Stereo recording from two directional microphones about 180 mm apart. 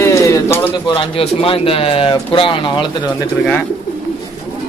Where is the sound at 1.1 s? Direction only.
30° left (ahead or behind).